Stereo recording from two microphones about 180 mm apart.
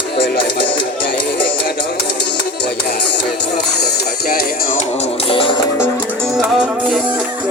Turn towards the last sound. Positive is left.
turn(degrees=-5)  # may be behind; listen again after turning